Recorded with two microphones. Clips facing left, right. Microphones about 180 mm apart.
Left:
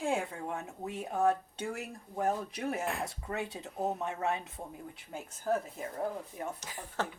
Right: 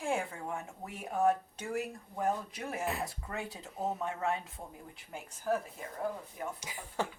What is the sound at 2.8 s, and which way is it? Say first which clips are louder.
Speech: even; centre (ahead or behind).